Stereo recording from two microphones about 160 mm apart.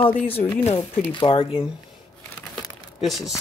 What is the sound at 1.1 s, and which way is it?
Speech, 30° left (ahead or behind).